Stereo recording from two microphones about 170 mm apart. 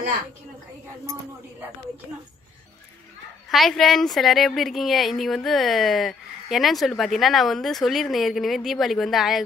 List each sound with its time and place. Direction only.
3.4 s a woman's voice: centre (ahead or behind)